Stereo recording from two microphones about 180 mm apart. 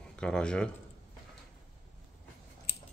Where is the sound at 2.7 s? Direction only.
70° left (ahead or behind).